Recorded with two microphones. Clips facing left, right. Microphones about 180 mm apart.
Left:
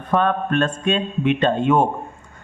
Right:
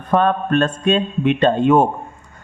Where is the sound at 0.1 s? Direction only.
35° right (ahead or behind).